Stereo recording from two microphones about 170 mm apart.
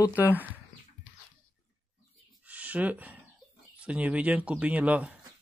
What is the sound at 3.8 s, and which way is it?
Speech, 10° right (ahead or behind).